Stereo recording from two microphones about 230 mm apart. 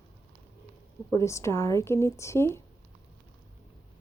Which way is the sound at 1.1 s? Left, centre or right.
Centre.